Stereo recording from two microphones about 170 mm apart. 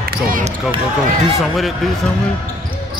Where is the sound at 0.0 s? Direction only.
55° right (ahead or behind).